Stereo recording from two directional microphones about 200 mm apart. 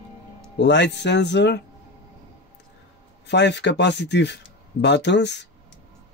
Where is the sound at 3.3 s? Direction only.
60° left (ahead or behind).